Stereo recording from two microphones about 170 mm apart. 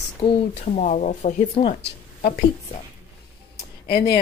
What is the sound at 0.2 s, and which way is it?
Speech, 35° left (ahead or behind).